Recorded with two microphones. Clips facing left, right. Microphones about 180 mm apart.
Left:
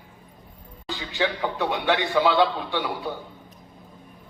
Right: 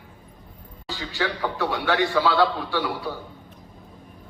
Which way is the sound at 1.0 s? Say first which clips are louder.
Left 1 dB; 20° left (ahead or behind).